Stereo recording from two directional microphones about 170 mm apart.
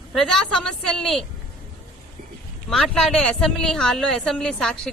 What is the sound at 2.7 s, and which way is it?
Speech, centre (ahead or behind).